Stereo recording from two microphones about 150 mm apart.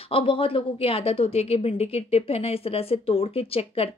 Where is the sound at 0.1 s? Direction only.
35° left (ahead or behind).